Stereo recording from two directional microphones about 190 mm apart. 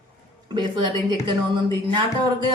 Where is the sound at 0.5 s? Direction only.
25° right (ahead or behind).